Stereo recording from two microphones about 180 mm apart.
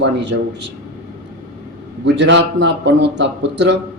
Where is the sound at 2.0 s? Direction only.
75° right (ahead or behind).